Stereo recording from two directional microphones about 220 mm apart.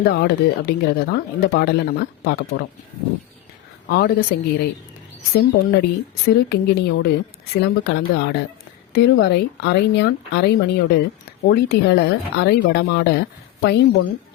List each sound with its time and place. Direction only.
0.0 s speech: 45° left (ahead or behind)
3.8 s speech: 45° left (ahead or behind)